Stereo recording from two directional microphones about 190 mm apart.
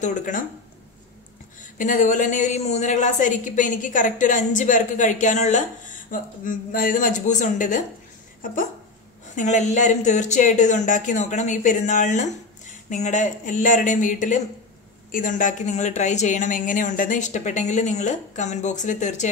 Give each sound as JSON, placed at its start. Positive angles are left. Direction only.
{"t": 0.0, "sound": "speech", "side_deg": 40}
{"t": 1.8, "sound": "a woman's voice", "side_deg": 45}
{"t": 9.3, "sound": "a woman's voice", "side_deg": 40}